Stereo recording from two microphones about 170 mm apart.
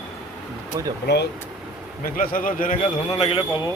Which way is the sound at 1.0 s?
75° left (ahead or behind).